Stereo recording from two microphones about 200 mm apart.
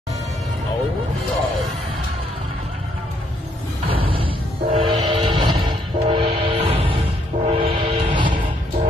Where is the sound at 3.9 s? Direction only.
25° right (ahead or behind).